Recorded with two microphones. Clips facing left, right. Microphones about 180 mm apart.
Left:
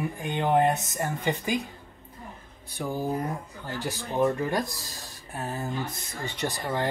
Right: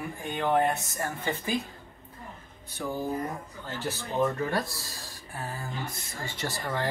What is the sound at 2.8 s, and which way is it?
Speech, 10° left (ahead or behind).